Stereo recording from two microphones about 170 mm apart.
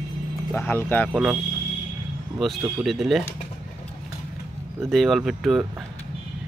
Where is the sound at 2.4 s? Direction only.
Centre (ahead or behind).